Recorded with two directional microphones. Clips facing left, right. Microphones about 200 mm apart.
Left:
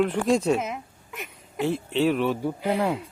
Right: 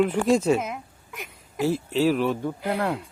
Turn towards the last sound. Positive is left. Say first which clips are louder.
# left 2 dB
turn(degrees=5)  # may be behind; listen again after turning